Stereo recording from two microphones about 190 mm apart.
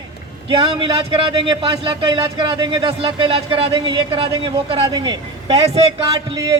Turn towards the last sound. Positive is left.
turn(degrees=-15)  # may be behind; listen again after turning